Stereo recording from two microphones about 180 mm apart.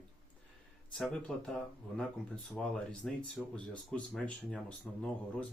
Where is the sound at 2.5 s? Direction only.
5° left (ahead or behind).